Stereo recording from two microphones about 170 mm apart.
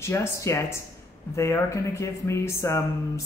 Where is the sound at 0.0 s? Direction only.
15° left (ahead or behind).